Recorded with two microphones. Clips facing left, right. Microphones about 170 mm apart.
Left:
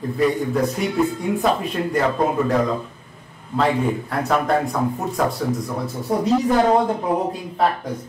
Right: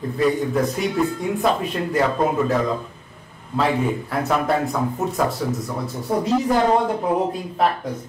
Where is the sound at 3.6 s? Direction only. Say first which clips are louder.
Left 1 dB; centre (ahead or behind).